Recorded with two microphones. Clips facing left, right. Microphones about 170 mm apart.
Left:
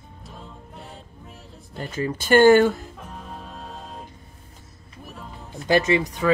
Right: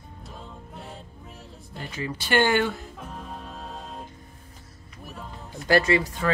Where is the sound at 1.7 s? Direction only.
45° left (ahead or behind).